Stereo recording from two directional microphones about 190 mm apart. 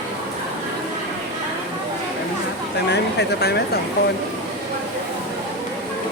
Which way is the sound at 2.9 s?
60° left (ahead or behind).